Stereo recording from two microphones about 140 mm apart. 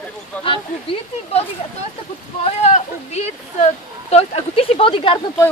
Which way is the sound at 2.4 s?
50° left (ahead or behind).